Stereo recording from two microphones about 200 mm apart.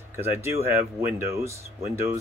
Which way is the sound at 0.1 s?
10° right (ahead or behind).